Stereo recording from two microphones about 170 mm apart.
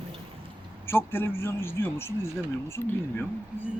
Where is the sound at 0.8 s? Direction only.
15° left (ahead or behind).